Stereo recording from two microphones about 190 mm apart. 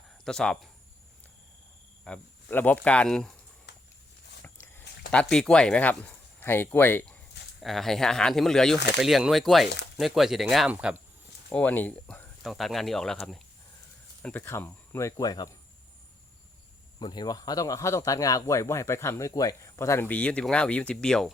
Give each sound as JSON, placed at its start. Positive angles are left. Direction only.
{"t": 0.3, "sound": "speech", "side_deg": 5}
{"t": 2.0, "sound": "speech", "side_deg": 10}
{"t": 4.6, "sound": "speech", "side_deg": 10}
{"t": 11.4, "sound": "speech", "side_deg": 10}
{"t": 17.0, "sound": "speech", "side_deg": 25}